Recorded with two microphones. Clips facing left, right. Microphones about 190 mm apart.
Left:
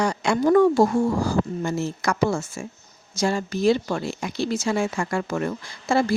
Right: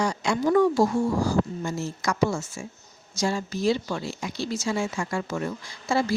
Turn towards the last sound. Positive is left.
turn(degrees=50)  # may be behind; listen again after turning